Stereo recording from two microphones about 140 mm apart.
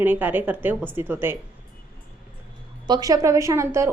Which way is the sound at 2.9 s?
25° right (ahead or behind).